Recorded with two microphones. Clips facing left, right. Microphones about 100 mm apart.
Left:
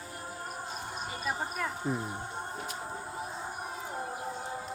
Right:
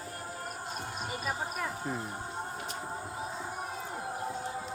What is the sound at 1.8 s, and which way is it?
Speech, centre (ahead or behind).